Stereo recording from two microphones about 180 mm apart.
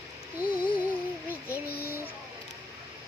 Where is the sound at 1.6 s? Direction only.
60° left (ahead or behind).